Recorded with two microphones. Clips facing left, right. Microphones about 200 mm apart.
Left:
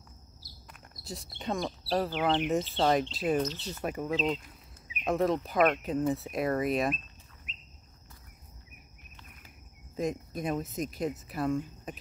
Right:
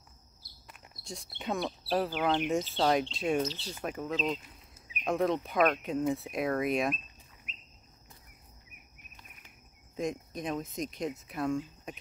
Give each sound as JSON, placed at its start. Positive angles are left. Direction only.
{"t": 1.0, "sound": "speech", "side_deg": 0}
{"t": 3.4, "sound": "speech", "side_deg": -30}
{"t": 3.8, "sound": "speech", "side_deg": 10}
{"t": 9.9, "sound": "speech", "side_deg": 5}